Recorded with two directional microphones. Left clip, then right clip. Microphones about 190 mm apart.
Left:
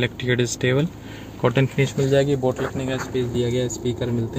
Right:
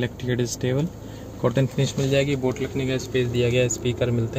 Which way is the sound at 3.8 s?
25° left (ahead or behind).